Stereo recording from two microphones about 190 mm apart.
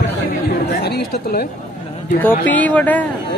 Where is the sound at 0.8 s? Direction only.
60° left (ahead or behind).